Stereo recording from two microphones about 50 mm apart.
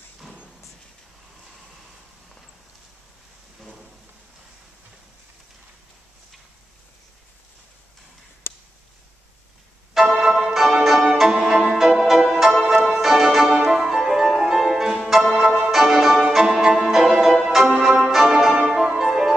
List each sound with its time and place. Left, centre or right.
8.5 s a sound: left
9.9 s music: centre
15.3 s music: centre
15.7 s music: centre
18.6 s music: centre